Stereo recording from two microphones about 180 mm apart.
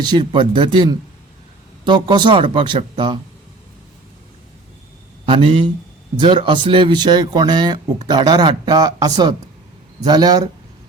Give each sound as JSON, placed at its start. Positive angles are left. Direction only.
{"t": 0.0, "sound": "speech", "side_deg": -25}
{"t": 5.2, "sound": "speech", "side_deg": -30}